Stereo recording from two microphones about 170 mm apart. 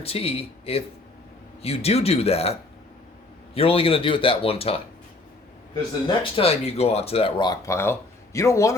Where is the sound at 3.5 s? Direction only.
35° left (ahead or behind).